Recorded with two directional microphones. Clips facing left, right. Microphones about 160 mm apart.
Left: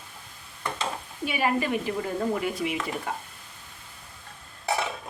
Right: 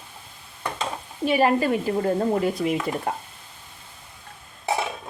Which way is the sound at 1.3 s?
40° right (ahead or behind).